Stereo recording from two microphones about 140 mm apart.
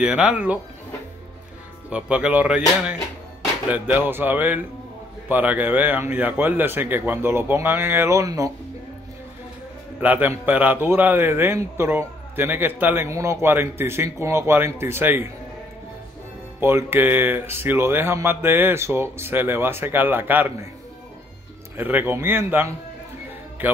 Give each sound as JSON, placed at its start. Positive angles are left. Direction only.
{"t": 0.0, "sound": "a man's voice", "side_deg": -5}
{"t": 1.9, "sound": "a man's voice", "side_deg": -10}
{"t": 3.7, "sound": "a man's voice", "side_deg": -10}
{"t": 9.9, "sound": "a man's voice", "side_deg": -10}
{"t": 16.5, "sound": "a man's voice", "side_deg": -15}
{"t": 21.7, "sound": "a man's voice", "side_deg": -15}